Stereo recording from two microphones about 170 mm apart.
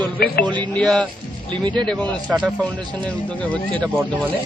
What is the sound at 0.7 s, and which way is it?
Speech, 5° left (ahead or behind).